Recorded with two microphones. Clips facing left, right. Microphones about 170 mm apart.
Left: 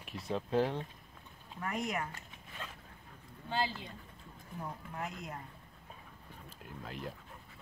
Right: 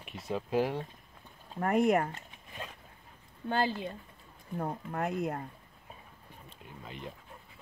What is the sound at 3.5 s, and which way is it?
Speech, 55° right (ahead or behind).